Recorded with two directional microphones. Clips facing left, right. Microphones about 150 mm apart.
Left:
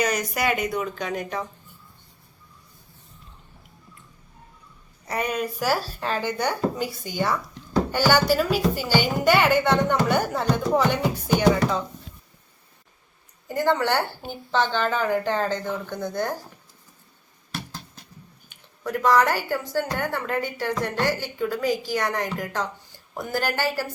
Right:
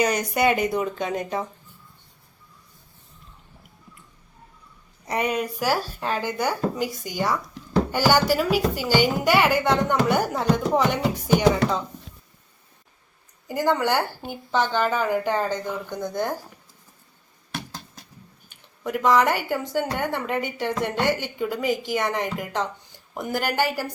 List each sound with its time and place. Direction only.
0.0 s speech: 30° right (ahead or behind)
5.0 s speech: 20° right (ahead or behind)
13.5 s speech: 15° right (ahead or behind)
18.8 s speech: 15° right (ahead or behind)